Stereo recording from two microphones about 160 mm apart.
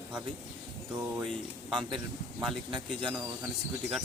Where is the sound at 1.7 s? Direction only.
5° left (ahead or behind).